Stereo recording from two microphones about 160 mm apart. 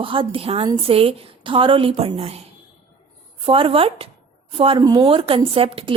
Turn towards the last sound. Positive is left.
turn(degrees=-35)  # may be behind; listen again after turning